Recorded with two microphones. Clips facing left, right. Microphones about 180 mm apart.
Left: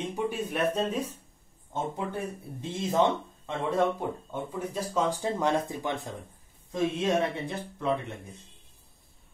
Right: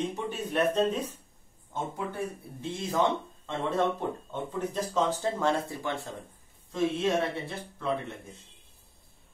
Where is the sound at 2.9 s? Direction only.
20° left (ahead or behind).